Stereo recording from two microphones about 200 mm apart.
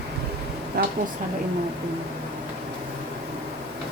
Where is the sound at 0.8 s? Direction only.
50° right (ahead or behind).